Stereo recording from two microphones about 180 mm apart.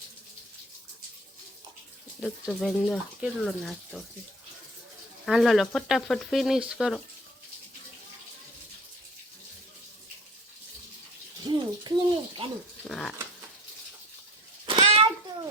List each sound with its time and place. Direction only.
2.2 s speech: centre (ahead or behind)
5.2 s speech: centre (ahead or behind)
11.4 s bird: 25° right (ahead or behind)
12.9 s speech: centre (ahead or behind)
14.8 s a sound: 35° right (ahead or behind)